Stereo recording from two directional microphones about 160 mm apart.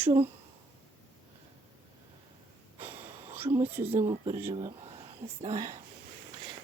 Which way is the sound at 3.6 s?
15° right (ahead or behind).